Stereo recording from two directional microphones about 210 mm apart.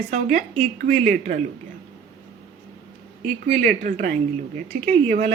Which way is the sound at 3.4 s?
45° right (ahead or behind).